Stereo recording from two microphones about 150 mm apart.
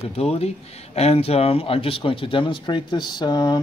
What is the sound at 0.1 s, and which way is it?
Speech, 45° left (ahead or behind).